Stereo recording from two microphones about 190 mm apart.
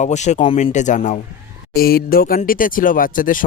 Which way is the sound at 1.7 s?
50° left (ahead or behind).